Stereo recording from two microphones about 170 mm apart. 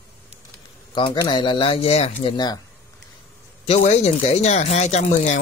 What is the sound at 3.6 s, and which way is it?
Speech, 40° left (ahead or behind).